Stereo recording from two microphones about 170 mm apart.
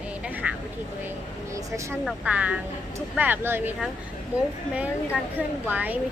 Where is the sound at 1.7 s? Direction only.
20° right (ahead or behind).